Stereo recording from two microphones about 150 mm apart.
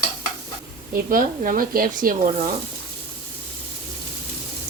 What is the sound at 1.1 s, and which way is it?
Speech, 70° right (ahead or behind).